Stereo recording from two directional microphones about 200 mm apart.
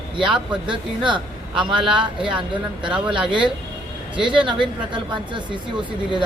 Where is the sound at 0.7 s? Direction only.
25° right (ahead or behind).